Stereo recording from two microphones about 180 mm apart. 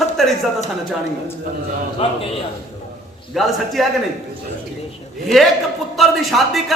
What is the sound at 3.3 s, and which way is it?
Speech, centre (ahead or behind).